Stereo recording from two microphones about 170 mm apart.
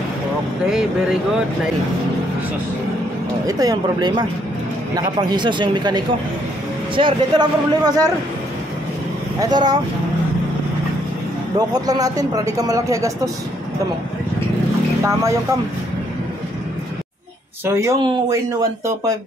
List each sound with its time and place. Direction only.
3.4 s speech: 20° right (ahead or behind)
9.4 s speech: 25° right (ahead or behind)
11.5 s speech: 20° right (ahead or behind)
17.6 s speech: 15° right (ahead or behind)